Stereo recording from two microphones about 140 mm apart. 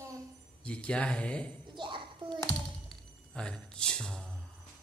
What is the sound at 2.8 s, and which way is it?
Music, 5° left (ahead or behind).